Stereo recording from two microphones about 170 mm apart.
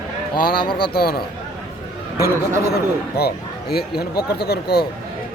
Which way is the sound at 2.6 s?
70° left (ahead or behind).